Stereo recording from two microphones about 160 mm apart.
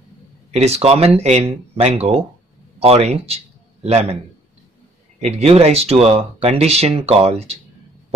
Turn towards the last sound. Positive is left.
turn(degrees=-40)  # may be behind; listen again after turning